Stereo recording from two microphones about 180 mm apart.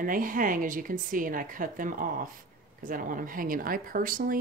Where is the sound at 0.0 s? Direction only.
50° right (ahead or behind).